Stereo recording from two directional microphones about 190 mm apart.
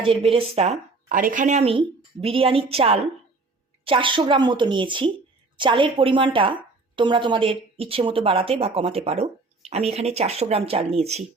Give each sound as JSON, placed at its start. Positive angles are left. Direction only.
{"t": 0.0, "sound": "a woman's voice", "side_deg": -30}
{"t": 1.0, "sound": "a woman's voice", "side_deg": -45}